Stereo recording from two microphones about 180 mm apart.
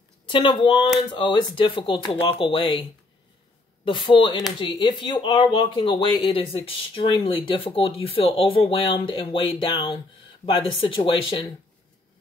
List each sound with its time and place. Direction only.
0.3 s speech: 25° left (ahead or behind)